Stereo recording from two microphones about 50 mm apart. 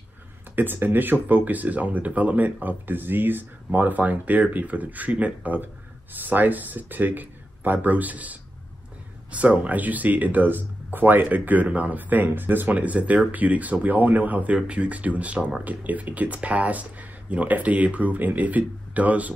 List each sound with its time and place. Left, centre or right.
0.6 s speech: right
12.7 s speech: right